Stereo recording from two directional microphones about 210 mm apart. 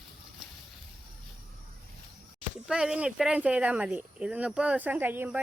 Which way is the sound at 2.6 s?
5° right (ahead or behind).